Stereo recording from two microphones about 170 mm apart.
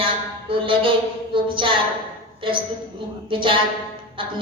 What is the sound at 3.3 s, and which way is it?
Speech, 30° right (ahead or behind).